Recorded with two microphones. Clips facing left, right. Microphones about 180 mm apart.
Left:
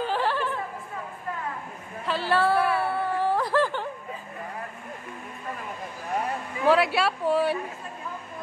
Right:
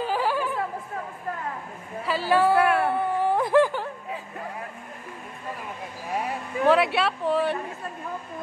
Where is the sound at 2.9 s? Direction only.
15° right (ahead or behind).